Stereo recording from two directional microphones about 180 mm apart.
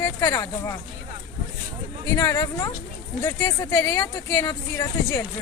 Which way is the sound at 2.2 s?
15° left (ahead or behind).